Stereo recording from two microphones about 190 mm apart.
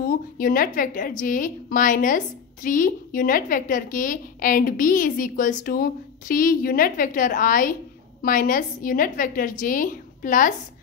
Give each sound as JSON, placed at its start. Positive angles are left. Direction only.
{"t": 0.0, "sound": "a woman's voice", "side_deg": 50}